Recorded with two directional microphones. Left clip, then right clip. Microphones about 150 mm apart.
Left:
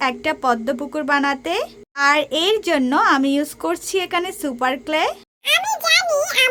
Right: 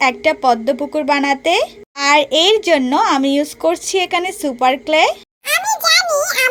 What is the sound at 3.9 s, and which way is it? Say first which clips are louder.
Speech: right 4 dB; 40° left (ahead or behind).